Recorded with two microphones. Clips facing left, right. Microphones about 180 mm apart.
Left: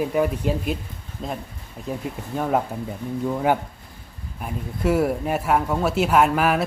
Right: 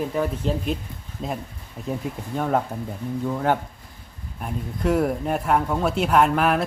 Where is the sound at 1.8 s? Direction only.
Centre (ahead or behind).